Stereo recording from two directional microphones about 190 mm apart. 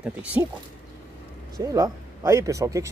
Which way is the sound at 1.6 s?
20° right (ahead or behind).